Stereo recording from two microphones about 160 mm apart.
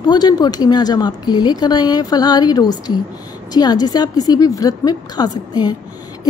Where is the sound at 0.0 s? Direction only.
25° left (ahead or behind).